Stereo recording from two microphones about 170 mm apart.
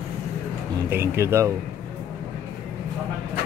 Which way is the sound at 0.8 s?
15° right (ahead or behind).